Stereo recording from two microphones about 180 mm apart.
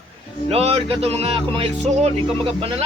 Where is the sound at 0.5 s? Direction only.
35° right (ahead or behind).